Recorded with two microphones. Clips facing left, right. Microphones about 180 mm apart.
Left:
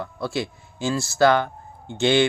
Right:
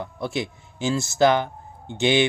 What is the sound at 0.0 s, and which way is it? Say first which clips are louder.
Speech: left 1 dB; 20° right (ahead or behind).